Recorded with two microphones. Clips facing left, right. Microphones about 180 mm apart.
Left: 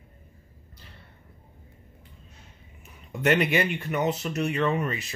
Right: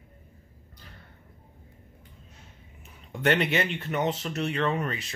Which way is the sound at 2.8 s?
5° left (ahead or behind).